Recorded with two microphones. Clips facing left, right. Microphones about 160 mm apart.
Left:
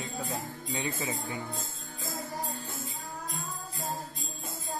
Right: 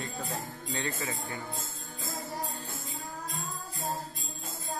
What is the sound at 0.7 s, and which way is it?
Music, 15° left (ahead or behind).